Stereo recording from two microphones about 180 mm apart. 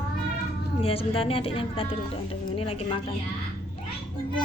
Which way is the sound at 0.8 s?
30° left (ahead or behind).